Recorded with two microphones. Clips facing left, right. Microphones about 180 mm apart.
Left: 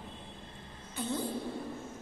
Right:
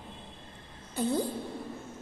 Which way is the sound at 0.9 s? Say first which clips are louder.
Right 6 dB; 35° right (ahead or behind).